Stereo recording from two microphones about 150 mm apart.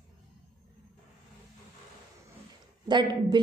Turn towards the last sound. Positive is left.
turn(degrees=-30)  # may be behind; listen again after turning